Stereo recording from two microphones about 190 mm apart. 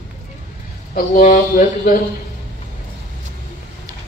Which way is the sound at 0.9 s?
50° left (ahead or behind).